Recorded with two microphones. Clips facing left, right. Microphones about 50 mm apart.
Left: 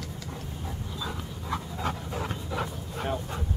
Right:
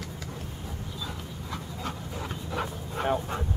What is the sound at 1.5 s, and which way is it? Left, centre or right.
Dog, centre.